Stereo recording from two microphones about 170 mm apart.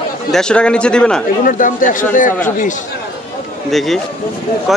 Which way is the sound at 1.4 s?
50° left (ahead or behind).